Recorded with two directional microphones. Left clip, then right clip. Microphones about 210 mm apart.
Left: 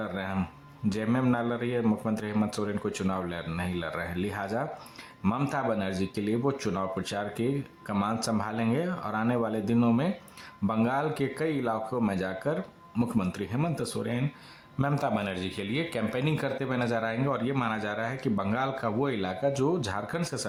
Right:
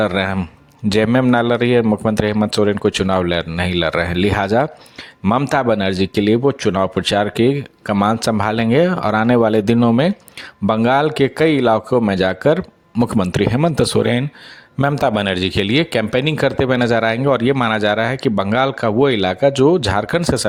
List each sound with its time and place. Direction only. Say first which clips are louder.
0.0 s a man's voice: right 16 dB; 45° right (ahead or behind)